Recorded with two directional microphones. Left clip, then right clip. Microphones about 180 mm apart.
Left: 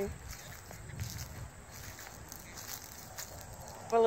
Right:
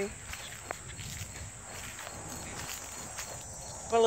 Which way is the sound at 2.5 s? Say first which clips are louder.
Right 3 dB; 65° left (ahead or behind).